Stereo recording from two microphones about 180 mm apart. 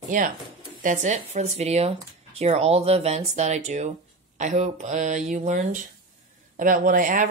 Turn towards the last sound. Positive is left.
turn(degrees=-45)  # may be behind; listen again after turning